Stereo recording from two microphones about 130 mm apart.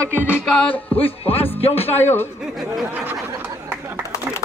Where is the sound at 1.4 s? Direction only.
50° left (ahead or behind).